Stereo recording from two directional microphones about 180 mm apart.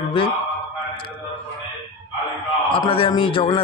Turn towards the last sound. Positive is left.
turn(degrees=30)  # may be behind; listen again after turning